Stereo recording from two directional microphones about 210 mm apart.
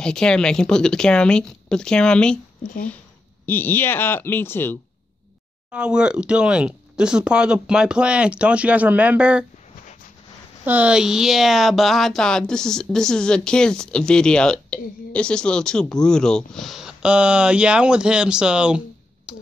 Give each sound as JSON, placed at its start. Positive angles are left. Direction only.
{"t": 0.0, "sound": "speech", "side_deg": 5}
{"t": 2.6, "sound": "speech", "side_deg": 40}
{"t": 3.4, "sound": "speech", "side_deg": 10}
{"t": 5.7, "sound": "speech", "side_deg": -5}
{"t": 10.6, "sound": "speech", "side_deg": -5}
{"t": 19.3, "sound": "a sound", "side_deg": -5}